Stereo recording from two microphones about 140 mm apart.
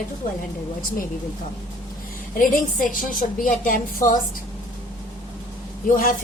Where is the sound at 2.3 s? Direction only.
70° left (ahead or behind).